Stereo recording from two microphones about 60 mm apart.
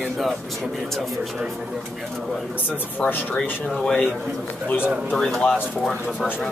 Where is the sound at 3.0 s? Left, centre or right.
Left.